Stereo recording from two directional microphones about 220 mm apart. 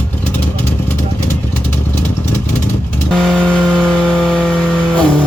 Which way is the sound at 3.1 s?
Centre (ahead or behind).